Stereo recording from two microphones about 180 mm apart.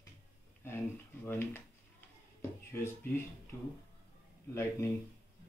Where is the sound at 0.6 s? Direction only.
15° left (ahead or behind).